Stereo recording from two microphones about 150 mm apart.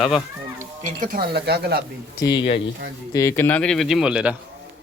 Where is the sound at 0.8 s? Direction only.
65° right (ahead or behind); by 1.8 s 90° right.